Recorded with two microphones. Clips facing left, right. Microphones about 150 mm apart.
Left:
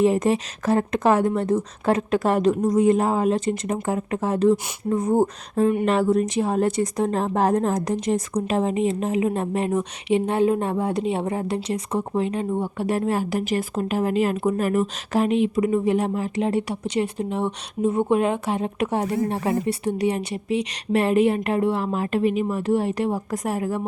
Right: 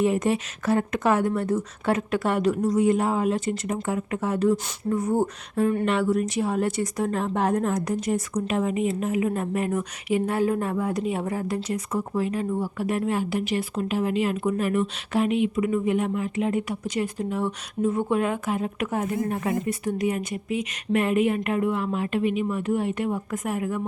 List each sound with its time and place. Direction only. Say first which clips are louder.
0.0 s a woman's voice: left 3 dB; 35° left (ahead or behind)
13.0 s speech: left 1 dB; 40° left (ahead or behind)